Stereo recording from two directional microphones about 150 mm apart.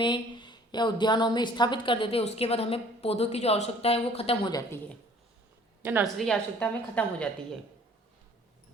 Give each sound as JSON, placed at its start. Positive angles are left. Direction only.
{"t": 0.0, "sound": "a woman's voice", "side_deg": 30}
{"t": 5.8, "sound": "a woman's voice", "side_deg": -10}
{"t": 6.1, "sound": "a woman's voice", "side_deg": 5}